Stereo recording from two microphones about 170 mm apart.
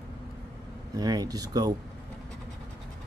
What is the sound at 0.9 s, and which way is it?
Speech, 20° right (ahead or behind).